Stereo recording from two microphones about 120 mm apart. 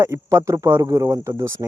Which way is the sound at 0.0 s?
25° right (ahead or behind).